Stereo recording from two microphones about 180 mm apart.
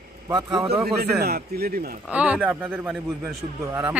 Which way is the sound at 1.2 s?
60° right (ahead or behind).